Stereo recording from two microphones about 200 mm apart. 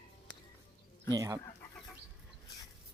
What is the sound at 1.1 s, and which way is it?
Speech, 15° right (ahead or behind).